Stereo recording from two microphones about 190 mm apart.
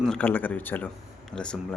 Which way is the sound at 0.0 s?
5° left (ahead or behind).